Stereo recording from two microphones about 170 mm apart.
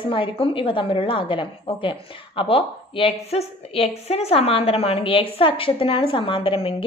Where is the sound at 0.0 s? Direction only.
30° left (ahead or behind).